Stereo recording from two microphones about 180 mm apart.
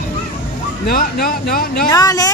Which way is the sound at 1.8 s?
20° left (ahead or behind).